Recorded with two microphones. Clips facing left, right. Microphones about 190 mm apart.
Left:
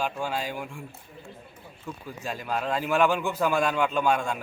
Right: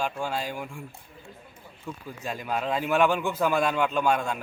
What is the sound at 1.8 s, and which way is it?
A man's voice, centre (ahead or behind).